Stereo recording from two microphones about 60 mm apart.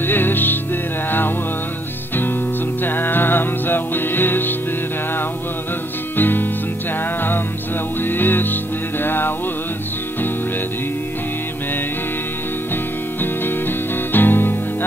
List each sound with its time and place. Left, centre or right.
0.0 s music: left
2.8 s music: left
6.1 s music: left
8.0 s music: left
13.2 s music: left